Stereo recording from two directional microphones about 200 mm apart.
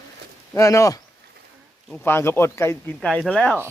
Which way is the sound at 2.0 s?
10° left (ahead or behind).